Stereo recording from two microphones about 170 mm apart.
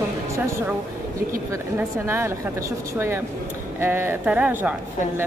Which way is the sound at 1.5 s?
15° right (ahead or behind).